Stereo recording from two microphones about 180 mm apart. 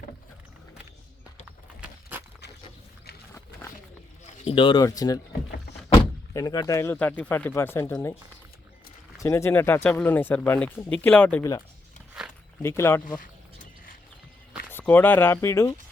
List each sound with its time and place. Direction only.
1.8 s walk: 10° right (ahead or behind)
4.4 s speech: 30° left (ahead or behind)
9.1 s speech: 15° left (ahead or behind)
12.6 s speech: 15° left (ahead or behind)
13.1 s a sound: 45° left (ahead or behind)
14.7 s speech: 10° left (ahead or behind)